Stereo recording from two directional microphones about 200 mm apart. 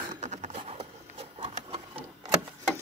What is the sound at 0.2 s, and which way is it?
Sewing machine, 35° right (ahead or behind).